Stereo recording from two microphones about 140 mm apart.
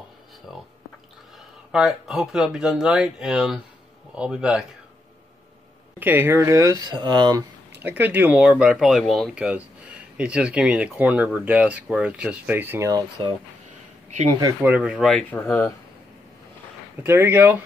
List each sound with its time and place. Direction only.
1.7 s speech: 5° right (ahead or behind)
5.9 s speech: 15° right (ahead or behind); by 7.4 s 30° right (ahead or behind)
7.8 s speech: 15° right (ahead or behind)
14.6 s speech: 10° right (ahead or behind); by 15.6 s 5° left (ahead or behind)
17.0 s speech: 15° right (ahead or behind)